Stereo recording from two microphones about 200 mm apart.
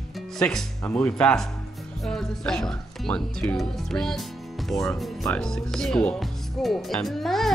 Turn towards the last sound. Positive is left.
turn(degrees=0)  # may be behind; listen again after turning